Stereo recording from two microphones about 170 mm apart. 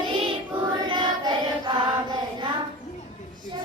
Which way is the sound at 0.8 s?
25° right (ahead or behind).